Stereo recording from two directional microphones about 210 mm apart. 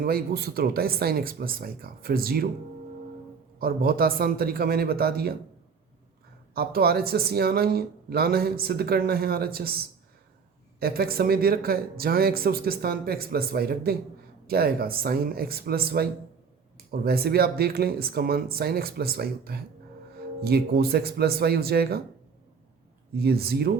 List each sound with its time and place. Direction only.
0.0 s speech: 45° right (ahead or behind)
3.6 s speech: 45° right (ahead or behind)
6.5 s speech: 45° right (ahead or behind)
23.1 s speech: 45° right (ahead or behind)